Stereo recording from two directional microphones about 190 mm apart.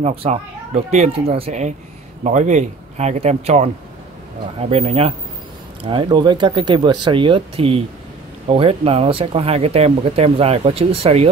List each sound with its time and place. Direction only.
0.0 s speech: 30° right (ahead or behind)